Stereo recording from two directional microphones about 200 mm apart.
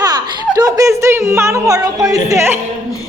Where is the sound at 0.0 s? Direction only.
20° right (ahead or behind).